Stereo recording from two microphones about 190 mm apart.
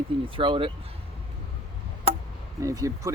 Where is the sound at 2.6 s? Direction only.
15° right (ahead or behind).